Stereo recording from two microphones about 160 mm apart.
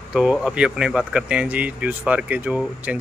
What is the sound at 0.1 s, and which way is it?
Speech, 5° right (ahead or behind).